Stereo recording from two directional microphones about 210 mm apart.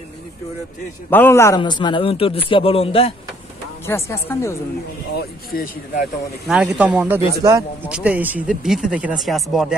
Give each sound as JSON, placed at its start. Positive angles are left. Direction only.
{"t": 1.1, "sound": "a man's voice", "side_deg": 10}
{"t": 3.8, "sound": "speech", "side_deg": 10}
{"t": 5.1, "sound": "speech", "side_deg": 45}
{"t": 6.4, "sound": "speech", "side_deg": -5}